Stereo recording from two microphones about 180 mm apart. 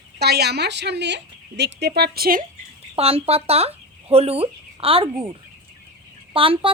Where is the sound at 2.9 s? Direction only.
35° right (ahead or behind).